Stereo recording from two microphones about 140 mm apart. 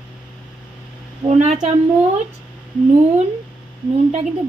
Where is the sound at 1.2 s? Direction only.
50° right (ahead or behind).